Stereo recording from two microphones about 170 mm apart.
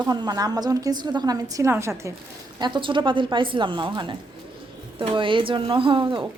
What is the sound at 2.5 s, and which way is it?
A woman's voice, 25° right (ahead or behind).